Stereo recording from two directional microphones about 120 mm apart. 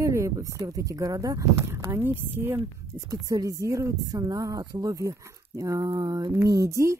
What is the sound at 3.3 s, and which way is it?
Speech, 30° right (ahead or behind).